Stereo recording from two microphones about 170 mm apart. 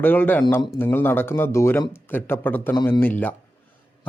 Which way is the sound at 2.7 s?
25° left (ahead or behind).